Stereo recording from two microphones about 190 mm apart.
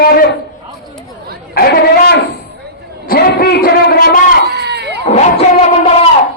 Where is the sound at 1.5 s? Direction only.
60° left (ahead or behind).